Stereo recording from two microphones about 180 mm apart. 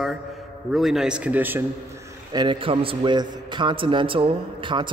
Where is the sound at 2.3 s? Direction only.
25° right (ahead or behind).